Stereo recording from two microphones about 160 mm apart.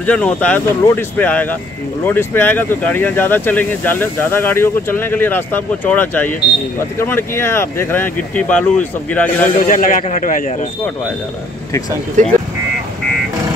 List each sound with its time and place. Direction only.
0.0 s speech: 10° left (ahead or behind)
9.6 s a man's voice: 60° left (ahead or behind)
12.2 s speech: 50° right (ahead or behind)